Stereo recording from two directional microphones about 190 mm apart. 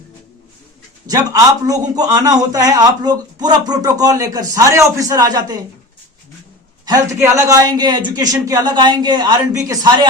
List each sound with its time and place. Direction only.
1.0 s a man's voice: 20° right (ahead or behind)
6.8 s a man's voice: 15° right (ahead or behind)